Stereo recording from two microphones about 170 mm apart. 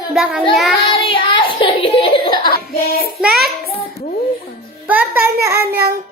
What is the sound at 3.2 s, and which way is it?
Speech, centre (ahead or behind).